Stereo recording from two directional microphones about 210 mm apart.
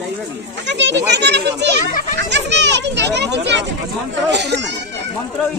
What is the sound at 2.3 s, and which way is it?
Children playing, 55° right (ahead or behind).